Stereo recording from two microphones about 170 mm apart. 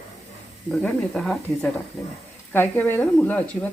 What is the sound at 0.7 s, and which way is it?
Speech, centre (ahead or behind).